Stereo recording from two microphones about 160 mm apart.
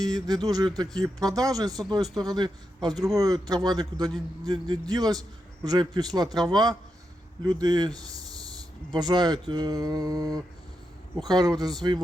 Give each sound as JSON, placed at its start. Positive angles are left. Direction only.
{"t": 0.0, "sound": "speech", "side_deg": -25}